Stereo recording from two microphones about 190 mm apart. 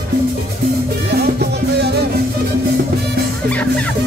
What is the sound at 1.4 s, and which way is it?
Music, 60° right (ahead or behind).